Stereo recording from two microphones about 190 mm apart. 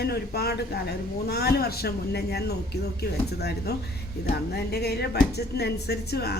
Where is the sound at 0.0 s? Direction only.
55° left (ahead or behind).